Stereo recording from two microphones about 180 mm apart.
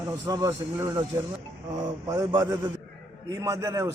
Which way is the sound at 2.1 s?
20° right (ahead or behind).